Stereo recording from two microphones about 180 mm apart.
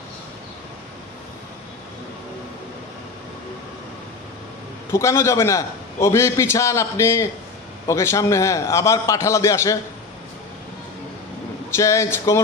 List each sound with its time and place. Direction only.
4.9 s a man's voice: 15° left (ahead or behind)
11.7 s a man's voice: 15° left (ahead or behind)